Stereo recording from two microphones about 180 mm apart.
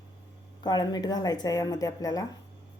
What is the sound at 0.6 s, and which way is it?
A woman's voice, 25° left (ahead or behind).